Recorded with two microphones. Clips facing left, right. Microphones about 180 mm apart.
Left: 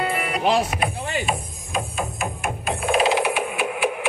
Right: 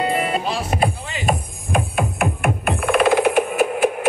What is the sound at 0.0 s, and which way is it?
Music, 25° right (ahead or behind).